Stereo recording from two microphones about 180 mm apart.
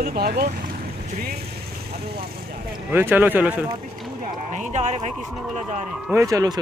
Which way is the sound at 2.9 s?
10° right (ahead or behind).